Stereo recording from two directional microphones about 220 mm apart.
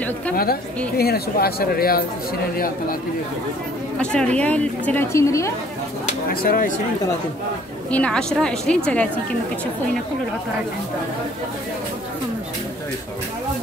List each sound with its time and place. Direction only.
0.3 s a man's voice: 45° left (ahead or behind)
4.0 s a woman's voice: 5° left (ahead or behind)
6.4 s a man's voice: 40° left (ahead or behind)
7.9 s speech: 5° left (ahead or behind)